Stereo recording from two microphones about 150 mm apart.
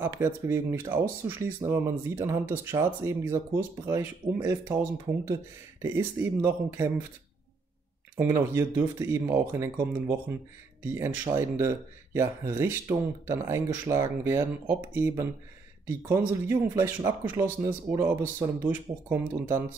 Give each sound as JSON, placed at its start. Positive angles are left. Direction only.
{"t": 0.0, "sound": "speech", "side_deg": -20}
{"t": 8.2, "sound": "speech", "side_deg": -15}